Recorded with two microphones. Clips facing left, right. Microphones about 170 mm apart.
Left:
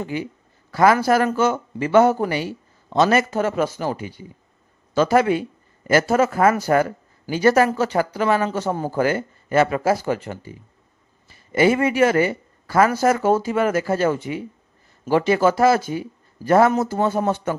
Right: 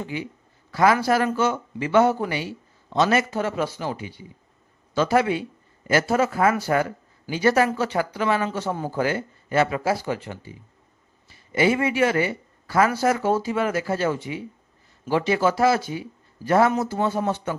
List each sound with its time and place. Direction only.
0.0 s a man's voice: 45° left (ahead or behind)